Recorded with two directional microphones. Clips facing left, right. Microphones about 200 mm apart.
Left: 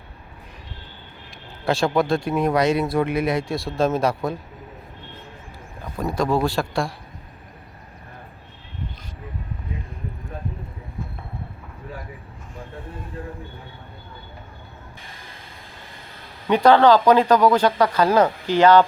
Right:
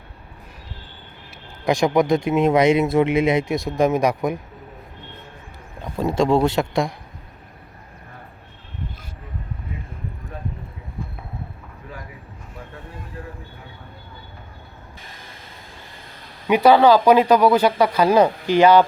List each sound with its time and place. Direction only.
1.6 s speech: 15° right (ahead or behind)
5.8 s speech: 25° right (ahead or behind)
16.5 s speech: 10° right (ahead or behind)